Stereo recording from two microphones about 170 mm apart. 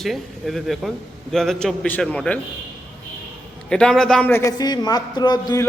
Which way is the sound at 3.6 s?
5° left (ahead or behind).